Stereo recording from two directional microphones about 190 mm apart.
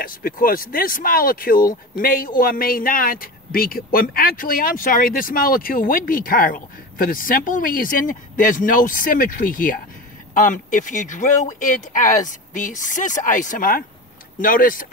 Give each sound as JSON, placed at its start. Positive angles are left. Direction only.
{"t": 0.0, "sound": "speech", "side_deg": 50}